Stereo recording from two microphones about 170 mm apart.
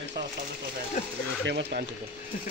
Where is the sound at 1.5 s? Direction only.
85° right.